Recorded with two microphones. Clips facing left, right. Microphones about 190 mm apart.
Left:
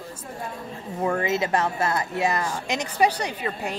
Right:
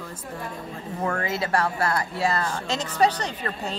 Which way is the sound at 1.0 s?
20° left (ahead or behind).